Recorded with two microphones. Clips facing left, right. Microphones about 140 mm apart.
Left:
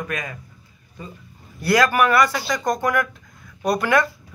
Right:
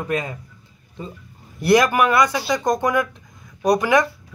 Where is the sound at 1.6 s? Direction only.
20° right (ahead or behind).